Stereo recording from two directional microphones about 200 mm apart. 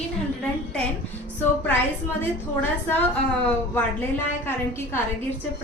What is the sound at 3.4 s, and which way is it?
Speech, 10° left (ahead or behind).